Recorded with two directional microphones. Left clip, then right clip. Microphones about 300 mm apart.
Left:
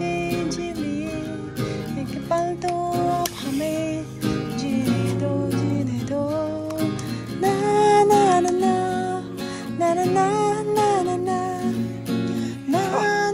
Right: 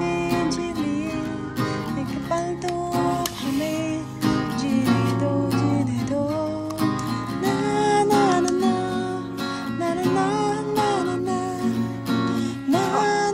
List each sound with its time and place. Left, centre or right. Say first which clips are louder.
0.0 s music: right 2 dB; centre
2.9 s music: left 1 dB; centre
7.4 s music: left 4 dB; centre